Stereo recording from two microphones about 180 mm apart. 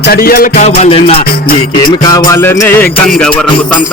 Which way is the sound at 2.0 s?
20° left (ahead or behind).